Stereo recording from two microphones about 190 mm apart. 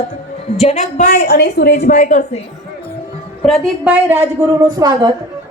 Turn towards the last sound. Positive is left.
turn(degrees=-20)  # may be behind; listen again after turning